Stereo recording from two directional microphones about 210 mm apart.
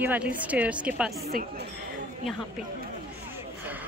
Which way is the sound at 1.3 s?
45° right (ahead or behind).